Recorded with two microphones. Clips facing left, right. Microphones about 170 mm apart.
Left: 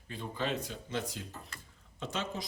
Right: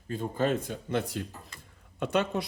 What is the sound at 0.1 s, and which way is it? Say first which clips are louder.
Speech: right 7 dB; 45° right (ahead or behind).